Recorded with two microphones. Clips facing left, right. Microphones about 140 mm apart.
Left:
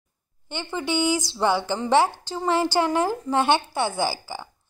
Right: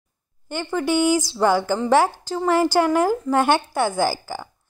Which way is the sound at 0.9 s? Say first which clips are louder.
Right 4 dB; 10° right (ahead or behind).